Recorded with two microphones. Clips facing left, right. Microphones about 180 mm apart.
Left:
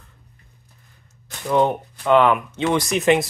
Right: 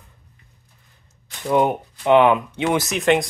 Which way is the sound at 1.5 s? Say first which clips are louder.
Even; 15° right (ahead or behind).